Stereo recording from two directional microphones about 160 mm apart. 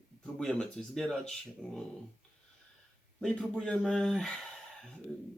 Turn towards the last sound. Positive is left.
turn(degrees=5)  # may be behind; listen again after turning